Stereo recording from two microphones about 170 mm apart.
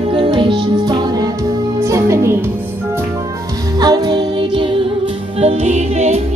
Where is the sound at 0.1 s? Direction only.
25° right (ahead or behind).